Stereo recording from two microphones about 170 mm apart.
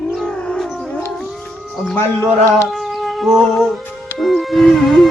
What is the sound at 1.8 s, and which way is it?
Speech, centre (ahead or behind).